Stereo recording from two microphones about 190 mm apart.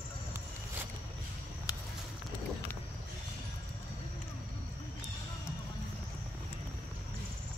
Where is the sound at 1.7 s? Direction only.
20° left (ahead or behind).